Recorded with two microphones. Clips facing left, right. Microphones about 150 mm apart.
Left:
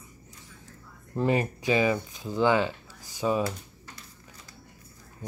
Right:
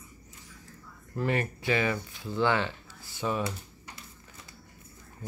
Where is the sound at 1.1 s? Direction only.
20° left (ahead or behind).